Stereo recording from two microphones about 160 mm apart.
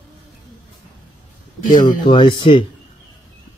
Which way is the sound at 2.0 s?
30° left (ahead or behind).